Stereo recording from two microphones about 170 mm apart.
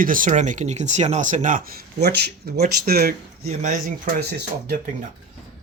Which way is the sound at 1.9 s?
75° right (ahead or behind).